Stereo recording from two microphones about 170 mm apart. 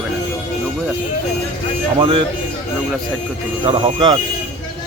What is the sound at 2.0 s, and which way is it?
Speech, 30° right (ahead or behind).